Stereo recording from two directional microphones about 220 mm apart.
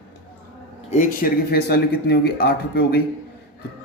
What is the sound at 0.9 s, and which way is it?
Speech, 40° left (ahead or behind).